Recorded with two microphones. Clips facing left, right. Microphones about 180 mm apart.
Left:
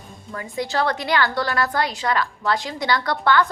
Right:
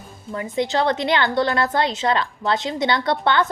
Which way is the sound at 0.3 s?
20° right (ahead or behind).